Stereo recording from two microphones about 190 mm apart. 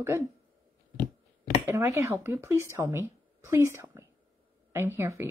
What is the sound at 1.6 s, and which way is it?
Speech, 10° right (ahead or behind).